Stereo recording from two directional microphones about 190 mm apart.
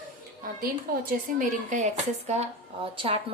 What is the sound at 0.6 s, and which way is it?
A woman's voice, 50° right (ahead or behind).